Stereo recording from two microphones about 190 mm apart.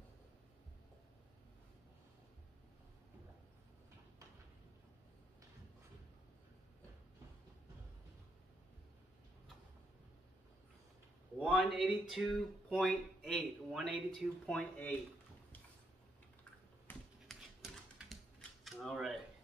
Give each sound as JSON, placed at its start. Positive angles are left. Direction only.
{"t": 11.3, "sound": "speech", "side_deg": 5}
{"t": 16.8, "sound": "typing", "side_deg": 0}
{"t": 18.6, "sound": "camera", "side_deg": 0}